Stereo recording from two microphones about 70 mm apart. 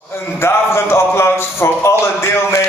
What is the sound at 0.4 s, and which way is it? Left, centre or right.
A man's voice, left.